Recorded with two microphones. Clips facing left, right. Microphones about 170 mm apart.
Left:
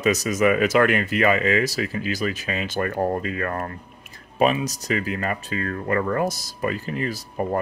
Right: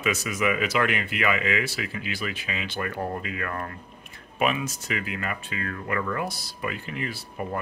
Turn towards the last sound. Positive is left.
turn(degrees=40)  # may be behind; listen again after turning